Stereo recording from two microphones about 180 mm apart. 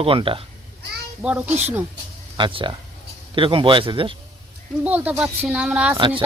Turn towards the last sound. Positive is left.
turn(degrees=-25)  # may be behind; listen again after turning